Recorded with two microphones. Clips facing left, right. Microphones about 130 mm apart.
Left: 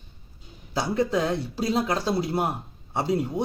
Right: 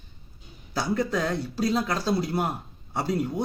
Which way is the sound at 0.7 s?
25° left (ahead or behind).